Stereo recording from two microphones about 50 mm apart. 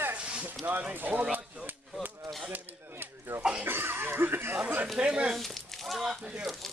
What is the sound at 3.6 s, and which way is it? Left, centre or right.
Speech, right.